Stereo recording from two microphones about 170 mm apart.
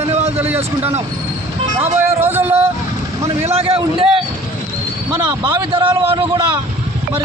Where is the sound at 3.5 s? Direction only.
35° right (ahead or behind).